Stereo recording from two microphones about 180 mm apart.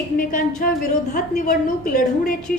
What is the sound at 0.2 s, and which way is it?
A woman's voice, 50° left (ahead or behind).